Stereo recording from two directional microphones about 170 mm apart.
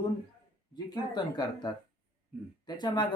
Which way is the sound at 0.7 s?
25° left (ahead or behind).